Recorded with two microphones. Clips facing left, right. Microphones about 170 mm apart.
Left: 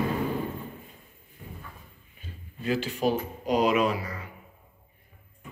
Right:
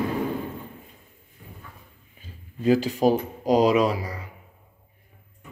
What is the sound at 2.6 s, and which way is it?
Speech, 40° right (ahead or behind).